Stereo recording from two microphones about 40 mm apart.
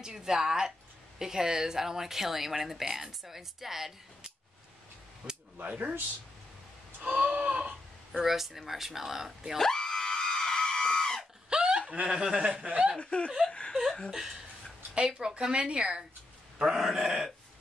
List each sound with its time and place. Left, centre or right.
0.0 s a woman's voice: centre
5.2 s cap gun: right
5.7 s speech: right
7.0 s a sound: right
7.3 s a sound: right
8.2 s a woman's voice: centre
9.6 s screaming: centre
11.5 s chuckle: centre
12.1 s speech: centre
13.0 s speech: left
13.5 s a sound: left
15.0 s speech: centre
16.5 s a woman's voice: centre